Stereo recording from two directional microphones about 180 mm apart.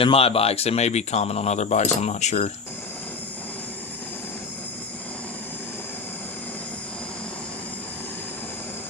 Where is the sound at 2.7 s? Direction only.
10° left (ahead or behind).